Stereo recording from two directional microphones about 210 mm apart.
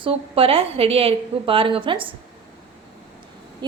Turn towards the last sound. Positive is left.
turn(degrees=-20)  # may be behind; listen again after turning